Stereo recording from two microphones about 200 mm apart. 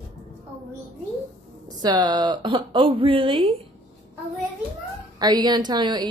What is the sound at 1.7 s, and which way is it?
A woman's voice, 20° right (ahead or behind).